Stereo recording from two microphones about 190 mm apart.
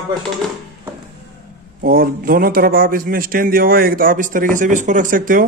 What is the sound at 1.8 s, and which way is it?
A man's voice, 50° right (ahead or behind).